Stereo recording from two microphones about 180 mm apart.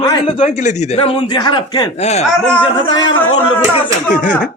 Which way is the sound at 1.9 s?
40° left (ahead or behind).